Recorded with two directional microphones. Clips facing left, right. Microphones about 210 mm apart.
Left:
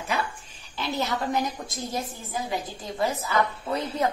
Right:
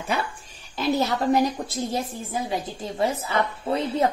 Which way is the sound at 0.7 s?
40° right (ahead or behind).